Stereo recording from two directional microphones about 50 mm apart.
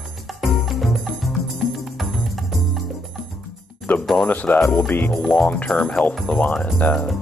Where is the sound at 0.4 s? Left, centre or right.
Centre.